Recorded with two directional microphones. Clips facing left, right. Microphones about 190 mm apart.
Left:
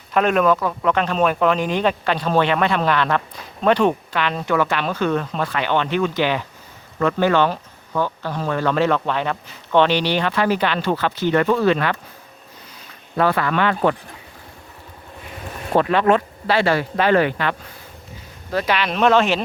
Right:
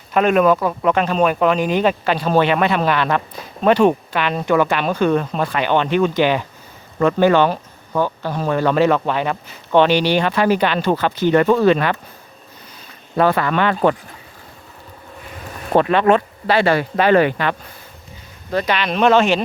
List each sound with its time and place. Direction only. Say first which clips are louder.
0.1 s speech: right 3 dB; 5° right (ahead or behind)
13.1 s speech: right 2 dB; 25° right (ahead or behind)
15.7 s speech: right 2 dB; 25° right (ahead or behind)
16.5 s speech: right 2 dB; 55° right (ahead or behind)
17.0 s speech: right 3 dB; 15° right (ahead or behind)
18.5 s speech: right 2 dB; 5° left (ahead or behind)